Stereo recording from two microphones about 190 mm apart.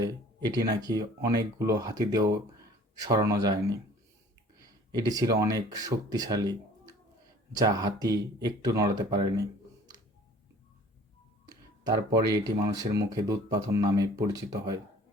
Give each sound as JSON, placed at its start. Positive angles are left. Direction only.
{"t": 0.0, "sound": "speech", "side_deg": -20}
{"t": 11.4, "sound": "a sound", "side_deg": -20}
{"t": 12.3, "sound": "speech", "side_deg": -20}